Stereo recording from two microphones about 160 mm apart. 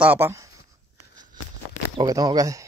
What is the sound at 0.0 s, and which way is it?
Speech, 10° right (ahead or behind).